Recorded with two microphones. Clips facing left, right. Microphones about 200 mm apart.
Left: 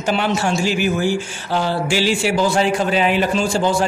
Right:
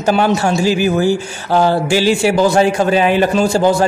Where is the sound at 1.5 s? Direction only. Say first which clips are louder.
Right 7 dB; 45° right (ahead or behind).